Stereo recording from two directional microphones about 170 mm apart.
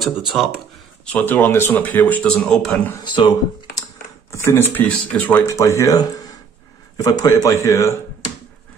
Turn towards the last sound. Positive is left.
turn(degrees=20)  # may be behind; listen again after turning